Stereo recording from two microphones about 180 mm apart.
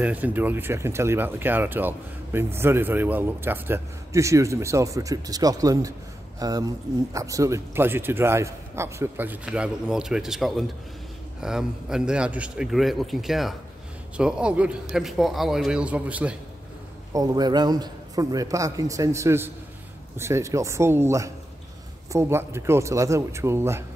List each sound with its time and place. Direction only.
0.0 s a man's voice: 10° right (ahead or behind)
17.1 s a man's voice: 20° right (ahead or behind)